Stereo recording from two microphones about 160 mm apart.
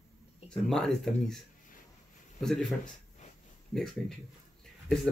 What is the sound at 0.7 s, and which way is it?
Speech, 5° left (ahead or behind).